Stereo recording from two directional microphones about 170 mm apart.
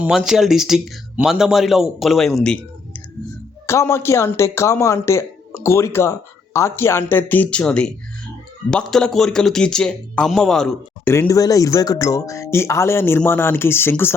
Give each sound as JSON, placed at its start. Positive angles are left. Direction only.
{"t": 0.0, "sound": "a man's voice", "side_deg": -5}
{"t": 3.7, "sound": "a man's voice", "side_deg": 15}
{"t": 11.1, "sound": "a man's voice", "side_deg": 20}